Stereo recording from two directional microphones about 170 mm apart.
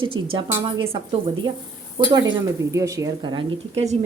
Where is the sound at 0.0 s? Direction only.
30° right (ahead or behind).